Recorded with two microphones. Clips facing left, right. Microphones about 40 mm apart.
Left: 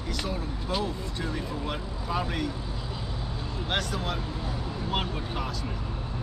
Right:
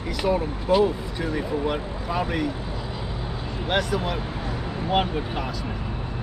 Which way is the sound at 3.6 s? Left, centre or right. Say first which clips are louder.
Right 6 dB; centre.